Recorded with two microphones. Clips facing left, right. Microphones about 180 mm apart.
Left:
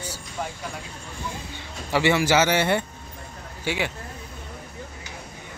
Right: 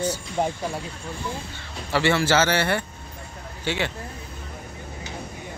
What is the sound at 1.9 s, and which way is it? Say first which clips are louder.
Speech: even; 15° left (ahead or behind).